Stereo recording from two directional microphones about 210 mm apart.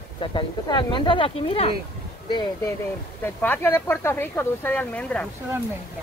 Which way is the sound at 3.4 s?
10° left (ahead or behind).